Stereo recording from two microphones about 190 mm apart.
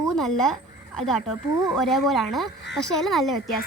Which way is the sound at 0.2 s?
Centre (ahead or behind).